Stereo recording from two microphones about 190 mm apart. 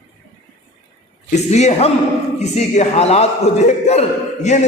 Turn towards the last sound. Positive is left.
turn(degrees=35)  # may be behind; listen again after turning